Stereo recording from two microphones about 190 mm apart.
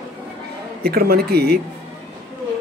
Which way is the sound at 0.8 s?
55° right (ahead or behind).